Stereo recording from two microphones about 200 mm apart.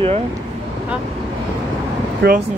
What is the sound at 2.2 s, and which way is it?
Speech, 50° right (ahead or behind).